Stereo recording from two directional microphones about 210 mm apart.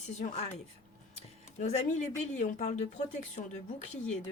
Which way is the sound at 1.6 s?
35° left (ahead or behind).